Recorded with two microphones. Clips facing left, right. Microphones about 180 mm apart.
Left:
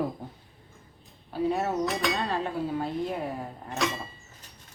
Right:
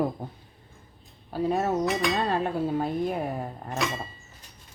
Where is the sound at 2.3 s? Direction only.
50° right (ahead or behind).